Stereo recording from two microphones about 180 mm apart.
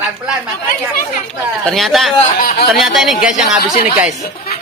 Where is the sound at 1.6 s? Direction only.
Centre (ahead or behind).